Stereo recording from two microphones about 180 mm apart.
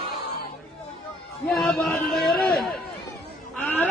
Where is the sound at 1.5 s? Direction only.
Centre (ahead or behind).